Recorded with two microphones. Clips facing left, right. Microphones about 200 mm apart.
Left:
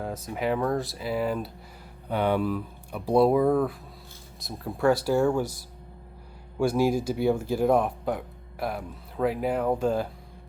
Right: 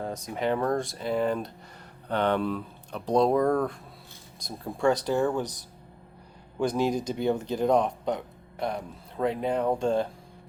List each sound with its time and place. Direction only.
0.0 s speech: 5° left (ahead or behind)
6.7 s speech: 5° left (ahead or behind)